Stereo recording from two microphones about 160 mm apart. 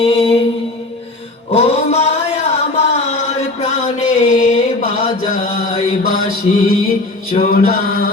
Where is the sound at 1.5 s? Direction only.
40° left (ahead or behind); by 6.1 s 55° left (ahead or behind).